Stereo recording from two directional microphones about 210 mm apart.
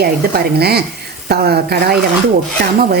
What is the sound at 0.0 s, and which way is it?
A woman's voice, 50° right (ahead or behind).